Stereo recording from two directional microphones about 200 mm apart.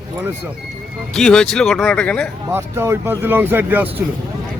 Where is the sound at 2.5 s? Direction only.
10° right (ahead or behind).